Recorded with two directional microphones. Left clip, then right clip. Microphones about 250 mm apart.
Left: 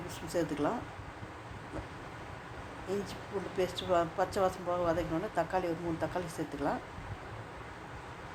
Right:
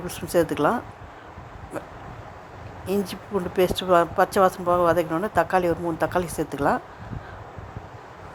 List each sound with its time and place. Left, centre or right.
0.1 s speech: right
2.9 s speech: right